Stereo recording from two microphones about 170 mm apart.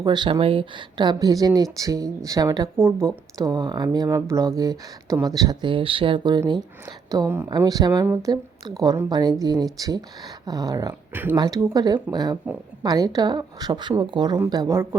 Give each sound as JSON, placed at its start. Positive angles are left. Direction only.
{"t": 0.0, "sound": "speech", "side_deg": -25}
{"t": 11.3, "sound": "speech", "side_deg": -20}